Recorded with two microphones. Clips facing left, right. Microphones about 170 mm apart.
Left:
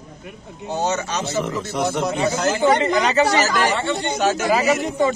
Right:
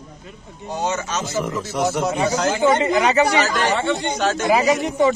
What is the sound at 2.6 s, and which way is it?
Speech, 15° right (ahead or behind).